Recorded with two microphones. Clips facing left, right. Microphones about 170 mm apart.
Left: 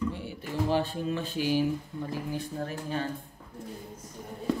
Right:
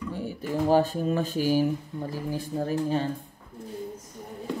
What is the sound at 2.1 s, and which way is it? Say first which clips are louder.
Speech: right 3 dB; 35° right (ahead or behind).